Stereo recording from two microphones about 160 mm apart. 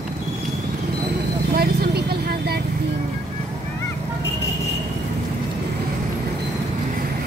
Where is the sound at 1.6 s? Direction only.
85° right.